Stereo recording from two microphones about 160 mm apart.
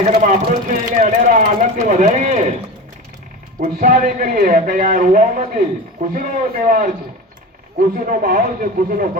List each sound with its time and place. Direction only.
0.2 s speech: 55° right (ahead or behind)
3.6 s a man's voice: 55° right (ahead or behind)